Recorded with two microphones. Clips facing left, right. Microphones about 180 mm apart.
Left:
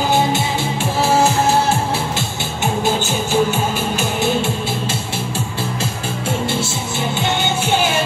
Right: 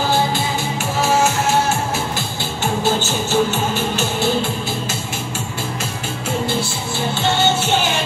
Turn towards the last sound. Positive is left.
turn(degrees=15)  # may be behind; listen again after turning